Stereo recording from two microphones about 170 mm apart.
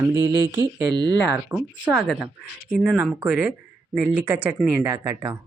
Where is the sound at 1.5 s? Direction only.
5° right (ahead or behind).